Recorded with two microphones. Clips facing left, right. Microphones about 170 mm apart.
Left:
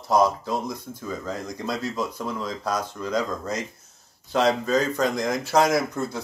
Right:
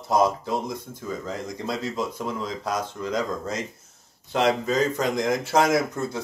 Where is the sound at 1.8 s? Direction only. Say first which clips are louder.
Even; 20° right (ahead or behind).